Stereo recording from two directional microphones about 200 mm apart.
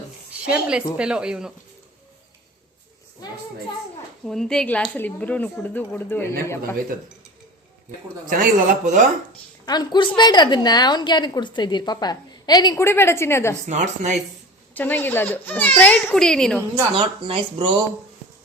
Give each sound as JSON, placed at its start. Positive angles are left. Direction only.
{"t": 0.5, "sound": "speech", "side_deg": -5}
{"t": 4.3, "sound": "speech", "side_deg": 0}
{"t": 8.3, "sound": "speech", "side_deg": -40}
{"t": 9.6, "sound": "a woman's voice", "side_deg": 20}
{"t": 13.7, "sound": "speech", "side_deg": -35}
{"t": 14.8, "sound": "speech", "side_deg": 10}
{"t": 16.9, "sound": "speech", "side_deg": -25}